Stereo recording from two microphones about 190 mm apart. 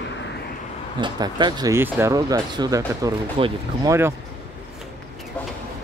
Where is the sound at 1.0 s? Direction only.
25° right (ahead or behind).